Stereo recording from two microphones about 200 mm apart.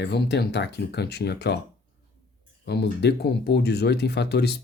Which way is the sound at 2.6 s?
55° left (ahead or behind).